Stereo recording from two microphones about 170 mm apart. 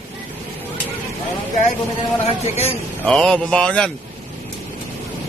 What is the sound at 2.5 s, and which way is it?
Speech, 40° left (ahead or behind).